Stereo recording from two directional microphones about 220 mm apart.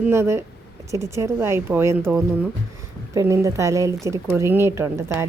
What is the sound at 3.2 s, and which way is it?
Speech, 15° right (ahead or behind).